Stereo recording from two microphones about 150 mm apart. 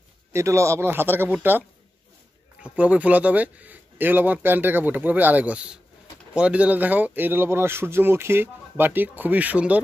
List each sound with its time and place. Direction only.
0.3 s speech: 20° right (ahead or behind)
2.6 s speech: 10° right (ahead or behind)